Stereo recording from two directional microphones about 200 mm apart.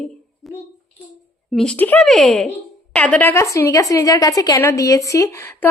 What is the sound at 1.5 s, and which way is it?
A woman's voice, 5° left (ahead or behind).